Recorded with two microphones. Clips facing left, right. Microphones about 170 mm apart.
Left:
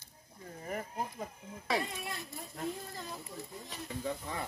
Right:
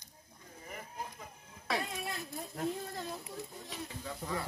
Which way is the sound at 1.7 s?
Centre (ahead or behind).